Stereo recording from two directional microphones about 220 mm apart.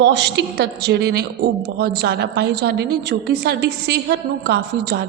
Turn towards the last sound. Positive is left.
turn(degrees=-50)  # may be behind; listen again after turning